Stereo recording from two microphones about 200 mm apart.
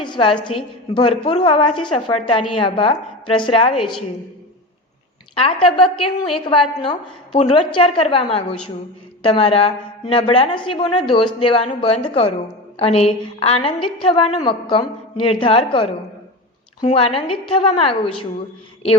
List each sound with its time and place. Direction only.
0.0 s a sound: 25° left (ahead or behind)
0.4 s a woman's voice: 25° left (ahead or behind)
5.3 s a woman's voice: 30° left (ahead or behind)